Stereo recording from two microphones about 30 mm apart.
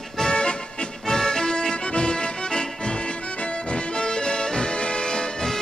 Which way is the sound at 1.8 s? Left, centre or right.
Left.